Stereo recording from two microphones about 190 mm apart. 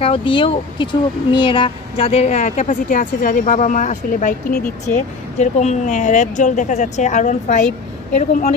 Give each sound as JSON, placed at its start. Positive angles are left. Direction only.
{"t": 0.0, "sound": "a woman's voice", "side_deg": 30}